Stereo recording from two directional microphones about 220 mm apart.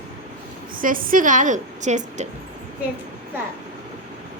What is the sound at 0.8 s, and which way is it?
A woman's voice, 40° right (ahead or behind).